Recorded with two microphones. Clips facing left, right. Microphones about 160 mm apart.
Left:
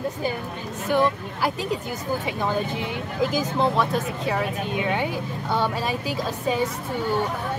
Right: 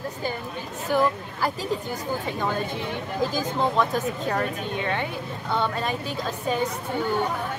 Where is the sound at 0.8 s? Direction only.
Centre (ahead or behind).